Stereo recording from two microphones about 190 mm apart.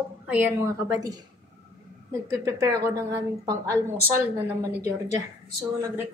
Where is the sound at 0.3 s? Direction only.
10° right (ahead or behind).